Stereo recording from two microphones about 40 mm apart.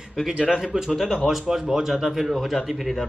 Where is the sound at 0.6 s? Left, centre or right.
Centre.